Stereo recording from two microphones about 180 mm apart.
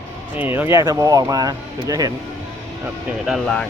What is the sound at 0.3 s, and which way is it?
Speech, 10° right (ahead or behind).